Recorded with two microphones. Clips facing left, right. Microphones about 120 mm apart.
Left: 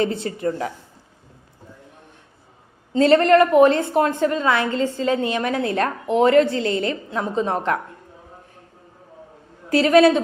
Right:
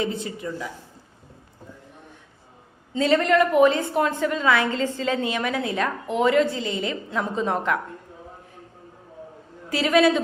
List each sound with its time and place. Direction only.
0.0 s a woman's voice: 65° left (ahead or behind)
3.0 s a woman's voice: 55° left (ahead or behind)
3.9 s a woman's voice: 40° left (ahead or behind)
4.4 s a woman's voice: 25° left (ahead or behind)
5.3 s a woman's voice: 35° left (ahead or behind)
5.6 s a woman's voice: 50° left (ahead or behind)
7.1 s a woman's voice: 25° left (ahead or behind)
9.6 s a woman's voice: 50° left (ahead or behind)